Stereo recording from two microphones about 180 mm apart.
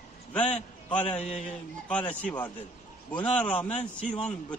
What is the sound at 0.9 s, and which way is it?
A man's voice, 5° left (ahead or behind).